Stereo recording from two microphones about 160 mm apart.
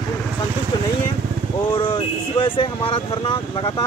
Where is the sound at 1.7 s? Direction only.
30° left (ahead or behind).